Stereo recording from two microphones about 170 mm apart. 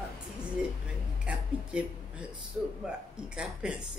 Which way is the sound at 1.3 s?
5° right (ahead or behind).